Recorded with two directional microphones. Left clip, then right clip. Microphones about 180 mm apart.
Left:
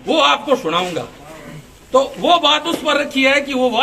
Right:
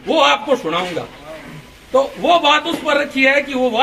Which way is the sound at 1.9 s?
25° left (ahead or behind).